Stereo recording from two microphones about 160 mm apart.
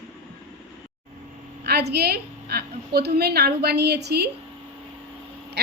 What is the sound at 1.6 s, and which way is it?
A woman's voice, 90° right.